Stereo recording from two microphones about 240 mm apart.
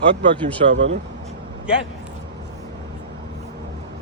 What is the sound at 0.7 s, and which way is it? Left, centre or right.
Speech, right.